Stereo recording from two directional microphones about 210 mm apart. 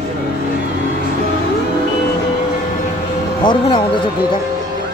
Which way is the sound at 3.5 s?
20° left (ahead or behind).